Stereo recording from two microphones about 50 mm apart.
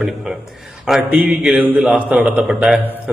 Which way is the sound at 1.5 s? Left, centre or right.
Centre.